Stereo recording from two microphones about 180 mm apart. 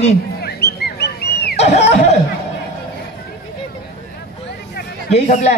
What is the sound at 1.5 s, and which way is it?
Speech, 40° left (ahead or behind).